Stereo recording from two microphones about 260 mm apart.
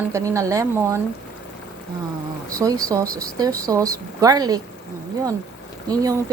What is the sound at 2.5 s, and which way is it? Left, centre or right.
A woman's voice, centre.